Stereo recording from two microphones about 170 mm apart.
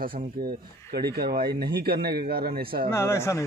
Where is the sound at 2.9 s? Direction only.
15° left (ahead or behind).